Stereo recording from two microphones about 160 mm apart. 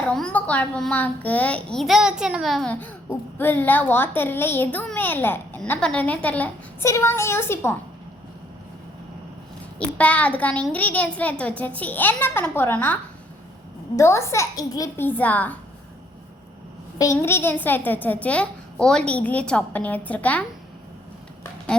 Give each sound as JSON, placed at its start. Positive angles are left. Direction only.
{"t": 0.1, "sound": "a child's voice", "side_deg": 5}
{"t": 2.8, "sound": "a child's voice", "side_deg": 15}
{"t": 6.8, "sound": "a child's voice", "side_deg": 20}
{"t": 9.7, "sound": "a child's voice", "side_deg": 10}
{"t": 17.0, "sound": "a child's voice", "side_deg": 15}